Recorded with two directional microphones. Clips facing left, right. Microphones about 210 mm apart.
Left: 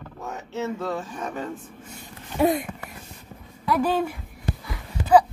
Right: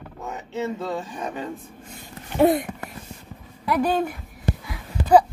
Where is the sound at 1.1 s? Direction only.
15° right (ahead or behind).